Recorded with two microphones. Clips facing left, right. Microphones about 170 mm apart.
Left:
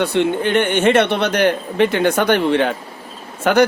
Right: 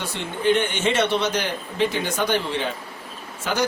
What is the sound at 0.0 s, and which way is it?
Speech, 65° left (ahead or behind).